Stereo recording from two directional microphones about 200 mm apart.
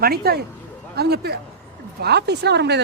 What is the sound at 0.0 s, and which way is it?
Speech, 50° right (ahead or behind).